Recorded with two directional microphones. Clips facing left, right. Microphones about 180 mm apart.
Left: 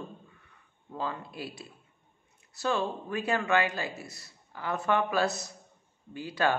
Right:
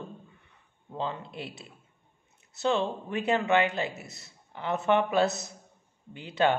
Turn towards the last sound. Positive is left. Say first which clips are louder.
# right 3 dB
turn(degrees=-25)  # may be behind; listen again after turning